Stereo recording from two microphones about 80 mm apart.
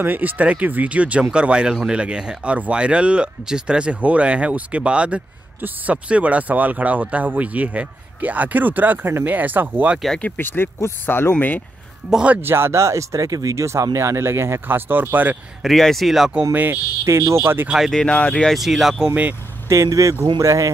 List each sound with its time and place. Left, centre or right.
0.0 s speech: right
10.2 s speech: left
12.1 s speech: centre
12.4 s speech: right
15.6 s speech: centre
16.5 s speech: right
17.0 s speech: right
17.6 s speech: centre
17.9 s speech: centre
18.6 s speech: centre
19.0 s speech: right
19.7 s speech: right